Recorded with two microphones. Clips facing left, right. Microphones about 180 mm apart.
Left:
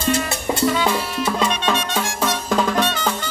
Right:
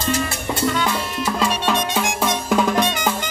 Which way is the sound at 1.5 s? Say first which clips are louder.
Right 1 dB; 15° right (ahead or behind).